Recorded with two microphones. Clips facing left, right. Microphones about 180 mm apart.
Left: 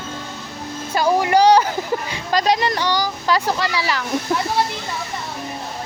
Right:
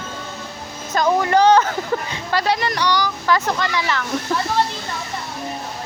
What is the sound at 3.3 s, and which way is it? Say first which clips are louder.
Speech: even; 15° left (ahead or behind).